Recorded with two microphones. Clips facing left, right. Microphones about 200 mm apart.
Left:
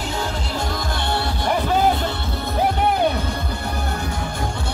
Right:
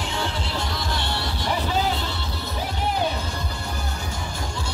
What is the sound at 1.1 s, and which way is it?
Music, 50° left (ahead or behind).